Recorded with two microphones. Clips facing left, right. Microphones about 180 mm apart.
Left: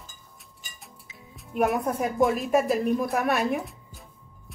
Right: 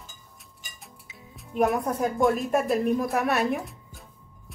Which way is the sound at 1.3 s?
Centre (ahead or behind).